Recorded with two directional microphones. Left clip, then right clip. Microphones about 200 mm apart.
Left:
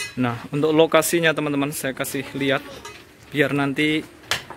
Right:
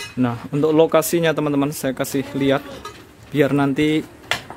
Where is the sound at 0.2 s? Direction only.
Centre (ahead or behind).